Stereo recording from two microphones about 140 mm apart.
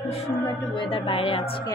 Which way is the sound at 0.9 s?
40° left (ahead or behind).